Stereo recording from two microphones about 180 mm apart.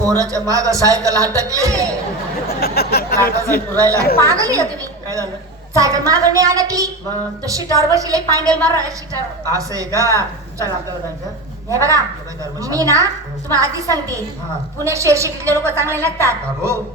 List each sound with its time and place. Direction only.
0.0 s a man's voice: 20° right (ahead or behind)
2.6 s speech: 60° left (ahead or behind)
3.2 s speech: 15° left (ahead or behind)
3.8 s a woman's voice: 15° right (ahead or behind)
9.5 s a woman's voice: 20° right (ahead or behind)
11.7 s a woman's voice: 15° right (ahead or behind)